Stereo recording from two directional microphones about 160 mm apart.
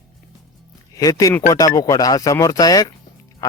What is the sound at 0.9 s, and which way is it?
Speech, 20° left (ahead or behind).